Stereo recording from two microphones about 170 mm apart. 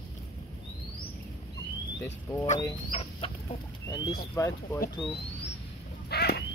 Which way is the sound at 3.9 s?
20° left (ahead or behind).